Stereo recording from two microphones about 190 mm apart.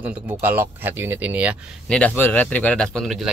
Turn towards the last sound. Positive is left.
turn(degrees=0)  # may be behind; listen again after turning